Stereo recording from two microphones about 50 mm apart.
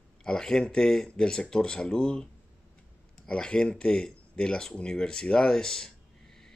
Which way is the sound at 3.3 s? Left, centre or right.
Centre.